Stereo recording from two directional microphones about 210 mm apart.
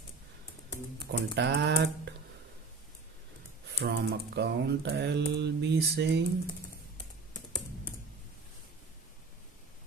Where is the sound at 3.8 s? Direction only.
50° right (ahead or behind).